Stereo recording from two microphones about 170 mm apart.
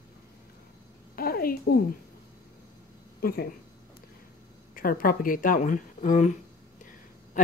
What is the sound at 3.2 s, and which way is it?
Speech, 60° left (ahead or behind).